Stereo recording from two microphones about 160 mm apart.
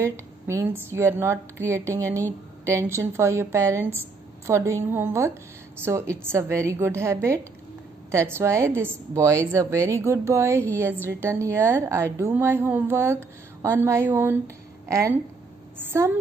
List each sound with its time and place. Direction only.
0.0 s a woman's voice: 20° right (ahead or behind)